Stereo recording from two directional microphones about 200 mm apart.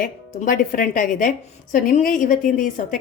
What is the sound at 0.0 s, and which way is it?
A woman's voice, 45° left (ahead or behind).